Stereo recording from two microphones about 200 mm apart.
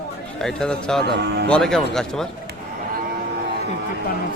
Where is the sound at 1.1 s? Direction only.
60° right (ahead or behind).